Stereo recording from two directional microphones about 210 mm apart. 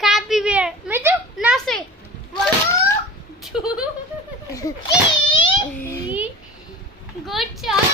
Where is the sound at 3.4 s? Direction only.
Centre (ahead or behind).